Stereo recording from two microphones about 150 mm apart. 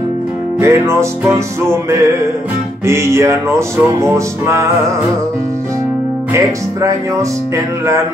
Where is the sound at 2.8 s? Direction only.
15° right (ahead or behind).